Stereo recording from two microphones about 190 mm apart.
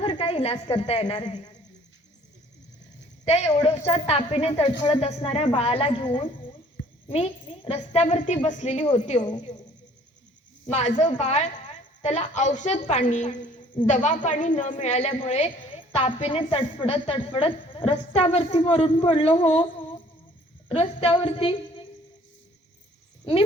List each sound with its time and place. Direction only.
0.0 s a woman's voice: 30° left (ahead or behind)
3.2 s a woman's voice: 35° left (ahead or behind)
10.7 s a woman's voice: 40° left (ahead or behind)
20.7 s a woman's voice: 30° left (ahead or behind)